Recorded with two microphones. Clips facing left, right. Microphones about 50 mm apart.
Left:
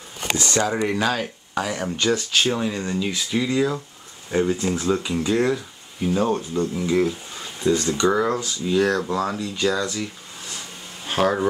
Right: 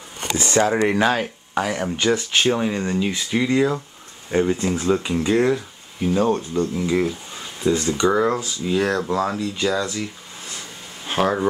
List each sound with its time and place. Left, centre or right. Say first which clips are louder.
0.4 s speech: right 5 dB; centre
7.6 s speech: right 1 dB; centre
11.1 s speech: even; centre